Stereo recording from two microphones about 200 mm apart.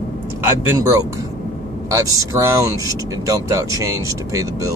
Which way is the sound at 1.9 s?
15° right (ahead or behind).